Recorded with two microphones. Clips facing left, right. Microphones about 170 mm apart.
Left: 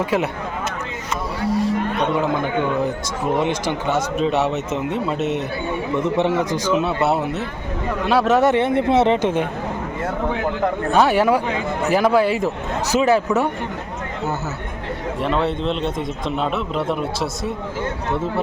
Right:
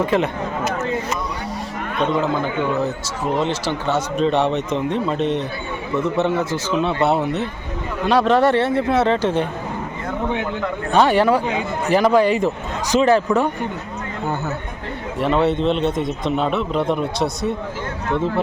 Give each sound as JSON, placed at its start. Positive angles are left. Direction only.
{"t": 0.0, "sound": "speech", "side_deg": 10}
{"t": 1.4, "sound": "a sound", "side_deg": 0}
{"t": 3.3, "sound": "speech", "side_deg": 15}
{"t": 6.8, "sound": "speech", "side_deg": 5}
{"t": 10.9, "sound": "speech", "side_deg": 5}
{"t": 15.2, "sound": "speech", "side_deg": 0}